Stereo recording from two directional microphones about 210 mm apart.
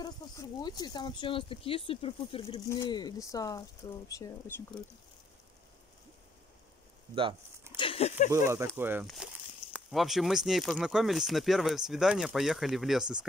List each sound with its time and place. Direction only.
0.0 s speech: 20° left (ahead or behind)
7.7 s a sound: 25° left (ahead or behind)
8.3 s speech: 15° right (ahead or behind)